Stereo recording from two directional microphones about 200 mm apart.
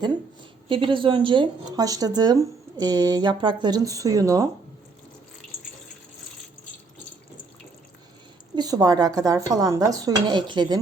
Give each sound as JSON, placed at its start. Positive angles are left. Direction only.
{"t": 0.7, "sound": "speech", "side_deg": -25}
{"t": 8.5, "sound": "speech", "side_deg": -20}